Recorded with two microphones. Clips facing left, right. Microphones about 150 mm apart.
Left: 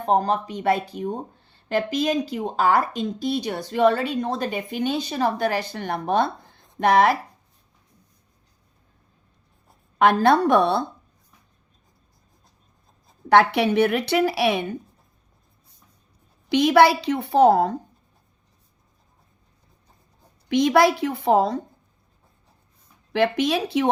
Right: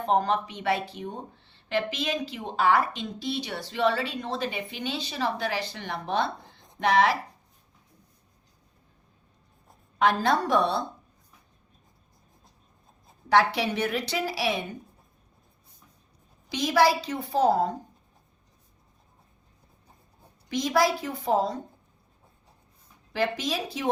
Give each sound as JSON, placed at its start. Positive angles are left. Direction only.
{"t": 0.0, "sound": "speech", "side_deg": 40}
{"t": 10.0, "sound": "a woman's voice", "side_deg": 60}
{"t": 13.2, "sound": "a woman's voice", "side_deg": 60}
{"t": 16.5, "sound": "a woman's voice", "side_deg": 65}
{"t": 20.5, "sound": "a woman's voice", "side_deg": 65}
{"t": 23.1, "sound": "a woman's voice", "side_deg": 65}